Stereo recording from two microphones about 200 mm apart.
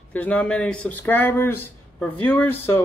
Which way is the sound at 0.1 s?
5° left (ahead or behind).